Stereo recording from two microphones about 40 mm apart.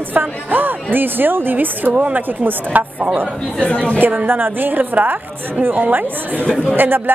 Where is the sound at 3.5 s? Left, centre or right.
Left.